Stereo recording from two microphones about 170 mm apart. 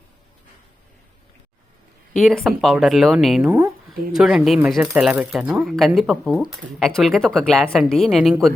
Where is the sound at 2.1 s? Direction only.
Centre (ahead or behind).